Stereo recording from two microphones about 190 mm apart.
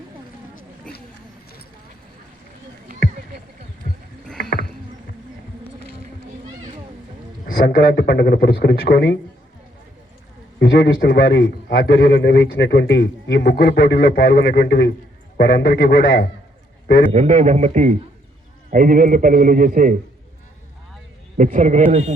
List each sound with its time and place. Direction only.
7.7 s a man's voice: 65° left (ahead or behind)
10.6 s a man's voice: 70° left (ahead or behind); by 16.2 s 50° left (ahead or behind)
17.1 s a man's voice: 40° right (ahead or behind)
21.3 s a man's voice: 40° right (ahead or behind)